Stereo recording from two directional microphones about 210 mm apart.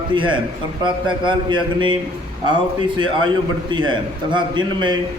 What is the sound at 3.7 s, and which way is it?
A man's voice, 20° right (ahead or behind).